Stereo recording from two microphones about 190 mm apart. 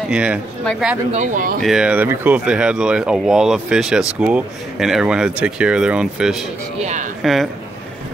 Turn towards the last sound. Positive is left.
turn(degrees=0)  # may be behind; listen again after turning